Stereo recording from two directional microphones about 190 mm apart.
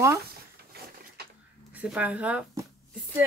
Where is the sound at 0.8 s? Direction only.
55° right (ahead or behind).